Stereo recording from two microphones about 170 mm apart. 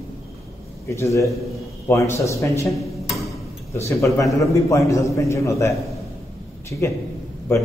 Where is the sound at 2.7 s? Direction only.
Centre (ahead or behind).